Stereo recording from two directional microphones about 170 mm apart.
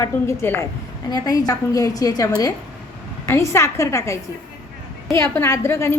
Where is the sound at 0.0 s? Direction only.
15° left (ahead or behind).